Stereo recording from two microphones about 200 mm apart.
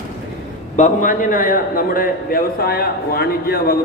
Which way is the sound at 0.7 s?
40° left (ahead or behind).